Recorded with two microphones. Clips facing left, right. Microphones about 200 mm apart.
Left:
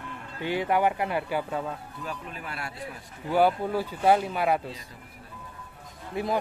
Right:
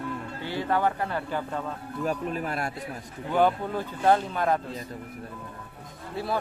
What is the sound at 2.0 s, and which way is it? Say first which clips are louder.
Speech: right 9 dB; 45° right (ahead or behind).